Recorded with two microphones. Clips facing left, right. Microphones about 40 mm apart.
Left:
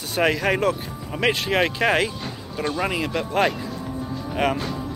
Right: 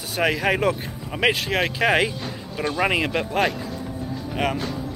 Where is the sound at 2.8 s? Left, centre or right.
Right.